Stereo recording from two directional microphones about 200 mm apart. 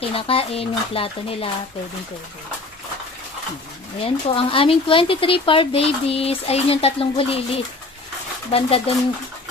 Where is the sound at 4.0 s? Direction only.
25° left (ahead or behind).